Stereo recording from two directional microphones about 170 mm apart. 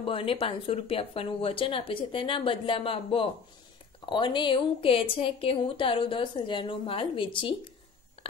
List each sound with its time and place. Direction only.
0.0 s a woman's voice: 30° left (ahead or behind)